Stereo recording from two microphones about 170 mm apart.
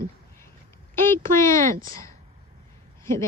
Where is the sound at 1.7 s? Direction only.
50° right (ahead or behind).